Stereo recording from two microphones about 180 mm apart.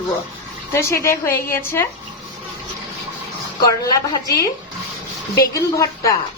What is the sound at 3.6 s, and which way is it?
Speech, 20° left (ahead or behind).